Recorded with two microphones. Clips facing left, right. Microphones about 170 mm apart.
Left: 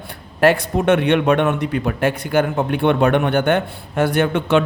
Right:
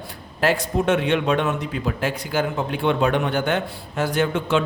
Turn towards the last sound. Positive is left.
turn(degrees=60)  # may be behind; listen again after turning